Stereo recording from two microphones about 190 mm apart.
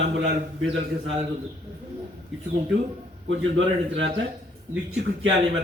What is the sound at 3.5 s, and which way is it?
Speech, 80° right.